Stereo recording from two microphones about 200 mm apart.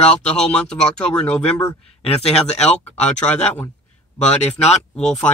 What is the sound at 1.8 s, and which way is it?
Speech, 30° left (ahead or behind).